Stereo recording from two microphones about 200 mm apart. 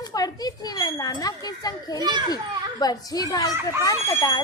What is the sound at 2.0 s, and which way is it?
Speech, 20° right (ahead or behind).